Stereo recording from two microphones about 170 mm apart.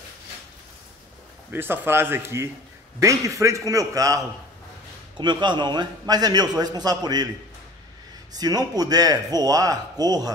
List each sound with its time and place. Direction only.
1.5 s a man's voice: 10° right (ahead or behind)
8.3 s a man's voice: 20° right (ahead or behind)